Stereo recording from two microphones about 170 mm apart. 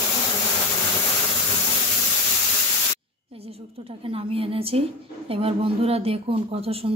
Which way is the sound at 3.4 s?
35° right (ahead or behind).